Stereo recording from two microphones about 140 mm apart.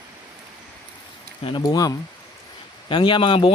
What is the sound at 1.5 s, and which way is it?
Speech, 30° left (ahead or behind).